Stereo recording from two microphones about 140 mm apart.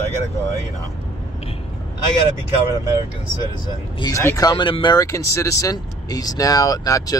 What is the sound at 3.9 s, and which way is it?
Speech, 25° left (ahead or behind).